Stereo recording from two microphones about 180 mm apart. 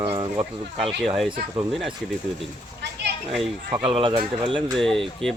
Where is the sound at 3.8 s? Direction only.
30° right (ahead or behind).